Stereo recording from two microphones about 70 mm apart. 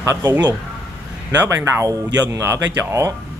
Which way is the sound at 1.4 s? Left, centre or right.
Right.